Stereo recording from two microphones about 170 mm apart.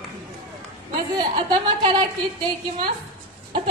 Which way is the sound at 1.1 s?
25° right (ahead or behind).